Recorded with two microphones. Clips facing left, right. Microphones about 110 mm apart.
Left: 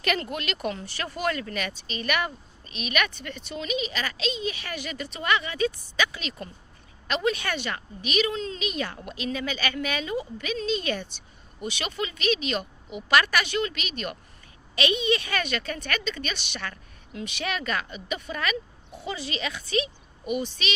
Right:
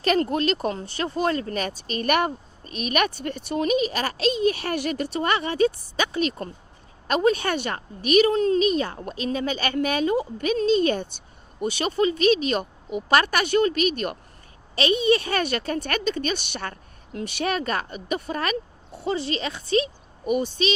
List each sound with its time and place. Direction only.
0.0 s speech: 35° right (ahead or behind)
5.1 s speech: 40° right (ahead or behind)
7.5 s speech: 50° right (ahead or behind)
17.2 s speech: 50° right (ahead or behind)
17.4 s speech: 40° right (ahead or behind)